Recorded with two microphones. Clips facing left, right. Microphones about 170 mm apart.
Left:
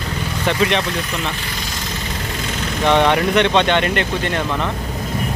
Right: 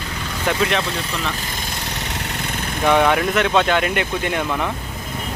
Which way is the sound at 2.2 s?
65° right (ahead or behind).